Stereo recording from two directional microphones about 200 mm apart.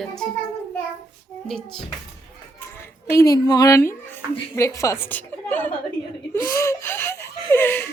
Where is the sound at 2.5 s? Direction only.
10° left (ahead or behind).